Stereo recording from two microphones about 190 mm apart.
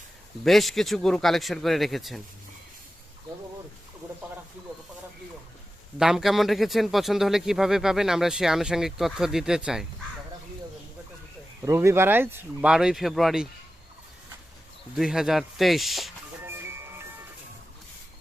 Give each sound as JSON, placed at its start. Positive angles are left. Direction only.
{"t": 0.4, "sound": "speech", "side_deg": 0}
{"t": 6.0, "sound": "speech", "side_deg": 0}
{"t": 11.6, "sound": "speech", "side_deg": -15}
{"t": 14.9, "sound": "speech", "side_deg": 0}
{"t": 16.5, "sound": "music", "side_deg": -10}